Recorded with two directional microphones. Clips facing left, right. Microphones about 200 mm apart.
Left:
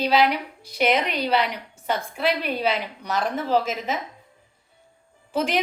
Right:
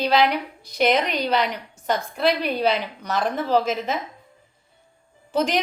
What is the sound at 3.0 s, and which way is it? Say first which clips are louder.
Speech: right 1 dB; 10° left (ahead or behind).